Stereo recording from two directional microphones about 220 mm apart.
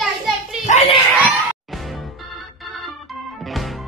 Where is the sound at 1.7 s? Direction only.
Centre (ahead or behind).